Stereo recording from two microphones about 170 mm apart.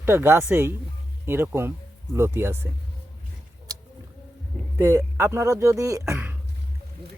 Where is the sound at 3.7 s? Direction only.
20° right (ahead or behind).